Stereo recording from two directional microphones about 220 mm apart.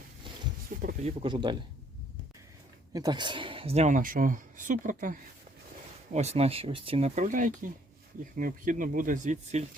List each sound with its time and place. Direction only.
0.7 s a sound: 45° right (ahead or behind)
1.0 s speech: 20° right (ahead or behind)
2.9 s speech: 20° right (ahead or behind); by 5.1 s 35° right (ahead or behind)
6.1 s speech: 30° right (ahead or behind)